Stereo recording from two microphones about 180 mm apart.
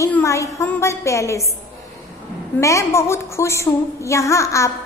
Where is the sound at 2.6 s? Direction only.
15° left (ahead or behind).